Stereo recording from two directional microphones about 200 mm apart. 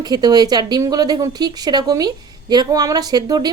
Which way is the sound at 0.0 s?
20° right (ahead or behind).